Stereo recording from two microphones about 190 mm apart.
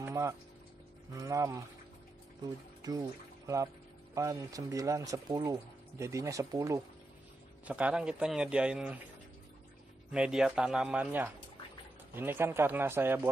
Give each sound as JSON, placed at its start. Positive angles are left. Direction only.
{"t": 0.0, "sound": "a sound", "side_deg": -15}
{"t": 1.1, "sound": "speech", "side_deg": -20}
{"t": 2.8, "sound": "speech", "side_deg": -20}
{"t": 10.1, "sound": "speech", "side_deg": -5}